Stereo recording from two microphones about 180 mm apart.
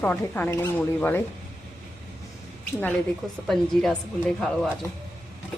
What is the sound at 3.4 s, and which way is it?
A woman's voice, centre (ahead or behind).